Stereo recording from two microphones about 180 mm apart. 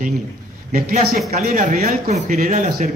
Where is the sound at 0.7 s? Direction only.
55° right (ahead or behind).